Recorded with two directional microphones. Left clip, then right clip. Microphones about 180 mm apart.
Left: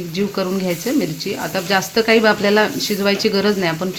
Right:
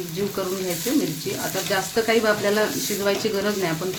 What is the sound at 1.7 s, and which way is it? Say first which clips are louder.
Speech: left 7 dB; 50° left (ahead or behind).